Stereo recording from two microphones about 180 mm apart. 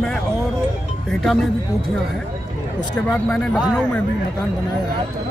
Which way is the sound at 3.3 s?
5° left (ahead or behind).